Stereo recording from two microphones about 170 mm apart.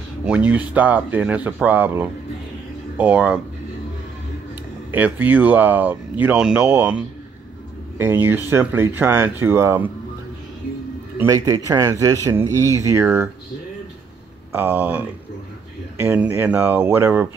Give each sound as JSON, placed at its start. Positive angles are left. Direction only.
{"t": 0.2, "sound": "speech", "side_deg": -5}
{"t": 4.9, "sound": "speech", "side_deg": -10}
{"t": 8.0, "sound": "speech", "side_deg": -15}
{"t": 11.1, "sound": "a man's voice", "side_deg": -20}
{"t": 14.5, "sound": "speech", "side_deg": -10}